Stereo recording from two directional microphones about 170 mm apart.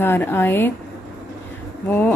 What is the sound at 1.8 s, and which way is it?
Speech, 10° left (ahead or behind).